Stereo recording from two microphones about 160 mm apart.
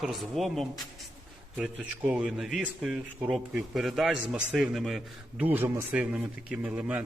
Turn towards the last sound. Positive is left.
turn(degrees=-10)  # may be behind; listen again after turning